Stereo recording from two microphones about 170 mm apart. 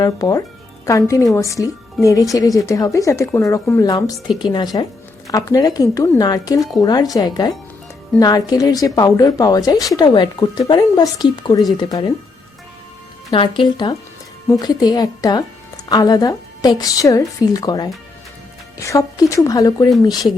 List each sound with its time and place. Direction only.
0.0 s a woman's voice: 20° left (ahead or behind)
13.3 s a woman's voice: 30° left (ahead or behind)